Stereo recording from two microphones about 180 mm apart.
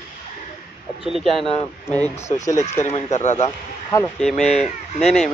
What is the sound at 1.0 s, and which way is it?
Speech, centre (ahead or behind).